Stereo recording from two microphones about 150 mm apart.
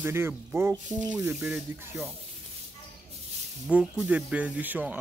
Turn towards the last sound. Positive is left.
turn(degrees=-10)  # may be behind; listen again after turning